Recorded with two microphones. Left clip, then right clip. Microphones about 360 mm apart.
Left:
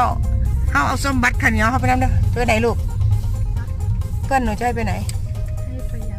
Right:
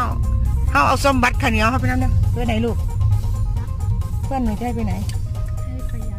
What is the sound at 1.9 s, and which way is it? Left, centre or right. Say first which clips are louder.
Speech: left 6 dB; left.